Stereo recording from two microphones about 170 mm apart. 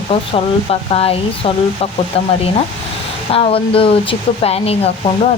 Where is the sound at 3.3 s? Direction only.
35° left (ahead or behind).